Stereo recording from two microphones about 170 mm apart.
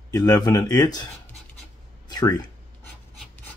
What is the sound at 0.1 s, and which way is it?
Speech, 20° left (ahead or behind).